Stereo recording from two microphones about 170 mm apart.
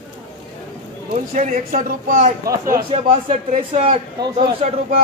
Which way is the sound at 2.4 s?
20° right (ahead or behind).